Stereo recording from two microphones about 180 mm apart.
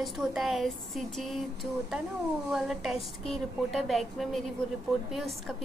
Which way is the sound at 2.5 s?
Centre (ahead or behind).